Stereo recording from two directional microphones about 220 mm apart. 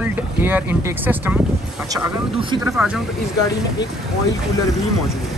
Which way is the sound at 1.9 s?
20° right (ahead or behind).